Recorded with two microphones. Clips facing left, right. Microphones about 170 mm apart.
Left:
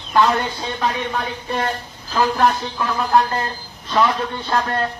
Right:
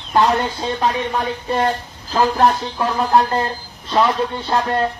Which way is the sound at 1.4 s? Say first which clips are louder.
Right 4 dB; 35° right (ahead or behind).